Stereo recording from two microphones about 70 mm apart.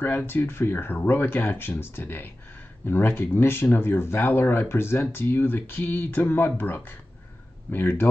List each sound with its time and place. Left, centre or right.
0.0 s speech: left